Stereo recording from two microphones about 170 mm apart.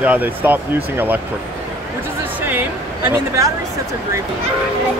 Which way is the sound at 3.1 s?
20° right (ahead or behind).